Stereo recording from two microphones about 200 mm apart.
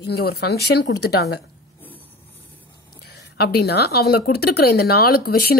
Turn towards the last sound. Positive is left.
turn(degrees=50)  # may be behind; listen again after turning